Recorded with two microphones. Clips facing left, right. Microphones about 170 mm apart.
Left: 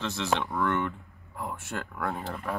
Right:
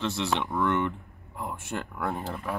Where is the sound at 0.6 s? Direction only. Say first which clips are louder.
Right 2 dB; 20° right (ahead or behind).